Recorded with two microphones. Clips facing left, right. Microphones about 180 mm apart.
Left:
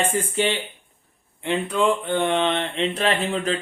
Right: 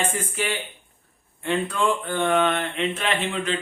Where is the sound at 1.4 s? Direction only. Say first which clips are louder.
Left 2 dB; 20° left (ahead or behind).